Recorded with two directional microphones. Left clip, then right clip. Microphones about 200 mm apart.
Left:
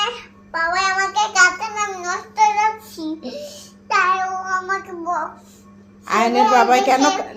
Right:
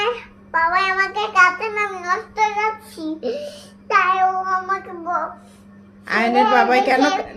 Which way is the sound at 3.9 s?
15° right (ahead or behind).